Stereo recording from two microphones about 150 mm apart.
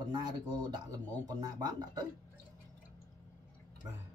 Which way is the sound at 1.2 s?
25° right (ahead or behind).